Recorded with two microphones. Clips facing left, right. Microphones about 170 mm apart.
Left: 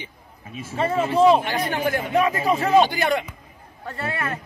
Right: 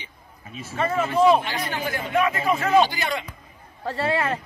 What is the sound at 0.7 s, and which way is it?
Speech, 30° left (ahead or behind).